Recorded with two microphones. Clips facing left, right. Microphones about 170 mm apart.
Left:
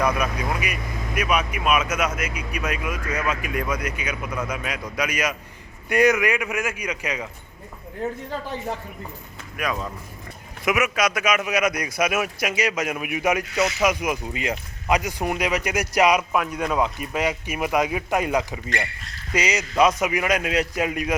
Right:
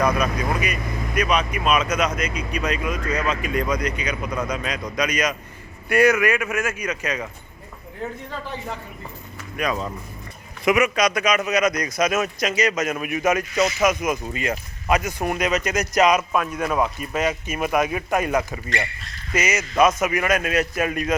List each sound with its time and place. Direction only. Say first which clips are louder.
0.0 s speech: right 2 dB; 10° left (ahead or behind)
9.6 s speech: right 2 dB; 5° left (ahead or behind)